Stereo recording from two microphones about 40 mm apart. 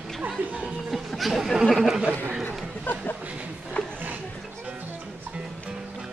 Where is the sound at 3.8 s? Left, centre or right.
Left.